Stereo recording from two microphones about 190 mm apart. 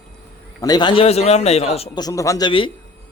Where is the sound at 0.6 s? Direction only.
20° left (ahead or behind).